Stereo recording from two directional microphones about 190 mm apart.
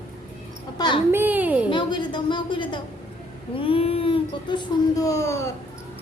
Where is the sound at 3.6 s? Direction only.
30° left (ahead or behind).